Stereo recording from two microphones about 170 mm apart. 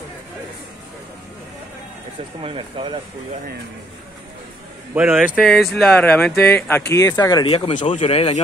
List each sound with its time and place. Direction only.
2.4 s speech: 30° right (ahead or behind)
4.9 s speech: 5° right (ahead or behind); by 8.4 s 35° left (ahead or behind)